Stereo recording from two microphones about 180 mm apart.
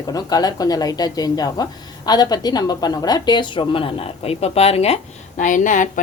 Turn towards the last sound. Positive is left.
turn(degrees=45)  # may be behind; listen again after turning